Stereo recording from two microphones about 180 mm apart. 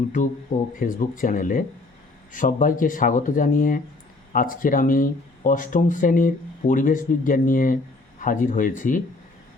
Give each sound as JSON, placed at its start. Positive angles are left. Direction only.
{"t": 0.8, "sound": "speech", "side_deg": 50}